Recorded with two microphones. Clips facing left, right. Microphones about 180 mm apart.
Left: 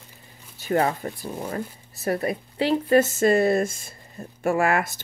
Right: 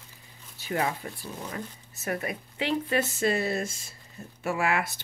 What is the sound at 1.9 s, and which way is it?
Speech, 35° left (ahead or behind).